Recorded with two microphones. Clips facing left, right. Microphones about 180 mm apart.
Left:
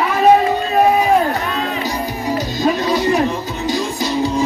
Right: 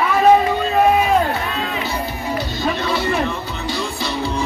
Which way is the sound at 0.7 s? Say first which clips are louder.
Left 1 dB; 15° left (ahead or behind).